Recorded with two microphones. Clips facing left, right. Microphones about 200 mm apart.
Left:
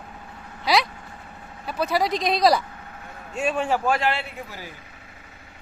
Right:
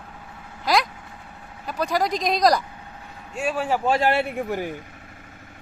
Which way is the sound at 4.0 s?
50° right (ahead or behind).